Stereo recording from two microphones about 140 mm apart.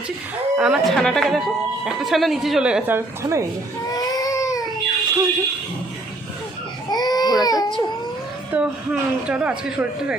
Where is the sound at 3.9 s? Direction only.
25° left (ahead or behind).